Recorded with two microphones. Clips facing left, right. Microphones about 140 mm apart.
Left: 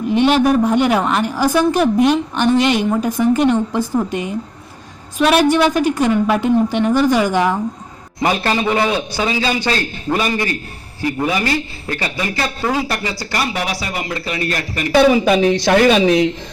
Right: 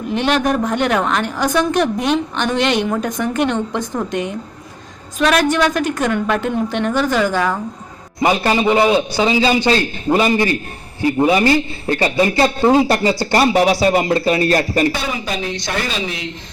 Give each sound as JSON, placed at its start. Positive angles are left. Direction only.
{"t": 0.3, "sound": "a woman's voice", "side_deg": 5}
{"t": 8.2, "sound": "a man's voice", "side_deg": -15}
{"t": 14.9, "sound": "speech", "side_deg": 70}